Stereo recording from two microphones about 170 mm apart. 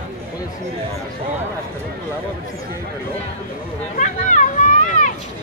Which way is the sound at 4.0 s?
45° left (ahead or behind).